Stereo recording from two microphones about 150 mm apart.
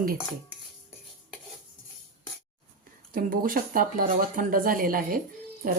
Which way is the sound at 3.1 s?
70° right (ahead or behind).